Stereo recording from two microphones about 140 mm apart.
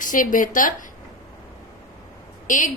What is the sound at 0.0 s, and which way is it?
Speech, 70° left (ahead or behind).